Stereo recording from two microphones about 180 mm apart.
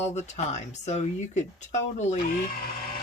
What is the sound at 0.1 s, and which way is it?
Speech, 40° left (ahead or behind).